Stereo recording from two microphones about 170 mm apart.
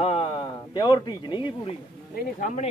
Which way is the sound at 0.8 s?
25° left (ahead or behind).